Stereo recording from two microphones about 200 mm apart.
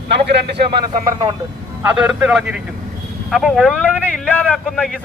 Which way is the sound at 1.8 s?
5° right (ahead or behind).